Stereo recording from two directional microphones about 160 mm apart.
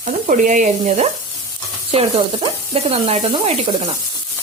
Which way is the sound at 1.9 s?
35° right (ahead or behind).